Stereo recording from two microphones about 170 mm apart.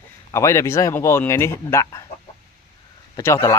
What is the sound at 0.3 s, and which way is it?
Speech, 15° left (ahead or behind).